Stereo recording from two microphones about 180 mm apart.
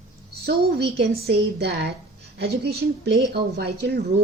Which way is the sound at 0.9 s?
65° right (ahead or behind).